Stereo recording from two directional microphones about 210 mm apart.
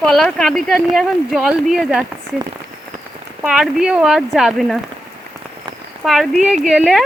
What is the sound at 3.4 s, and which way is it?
Speech, centre (ahead or behind).